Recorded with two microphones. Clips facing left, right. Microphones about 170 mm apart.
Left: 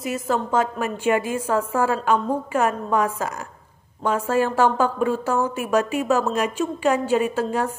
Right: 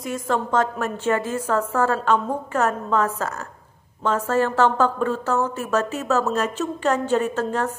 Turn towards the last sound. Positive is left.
turn(degrees=10)  # may be behind; listen again after turning